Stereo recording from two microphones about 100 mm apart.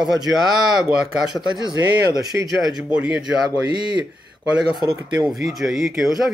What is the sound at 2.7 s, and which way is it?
Speech, 5° right (ahead or behind).